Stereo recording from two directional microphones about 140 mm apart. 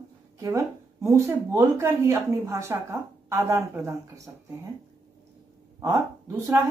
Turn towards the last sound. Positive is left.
turn(degrees=-20)  # may be behind; listen again after turning